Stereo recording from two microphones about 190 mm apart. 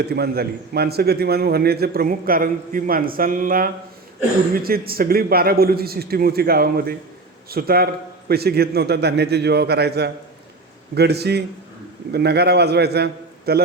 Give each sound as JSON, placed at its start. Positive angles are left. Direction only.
{"t": 0.0, "sound": "a man's voice", "side_deg": -55}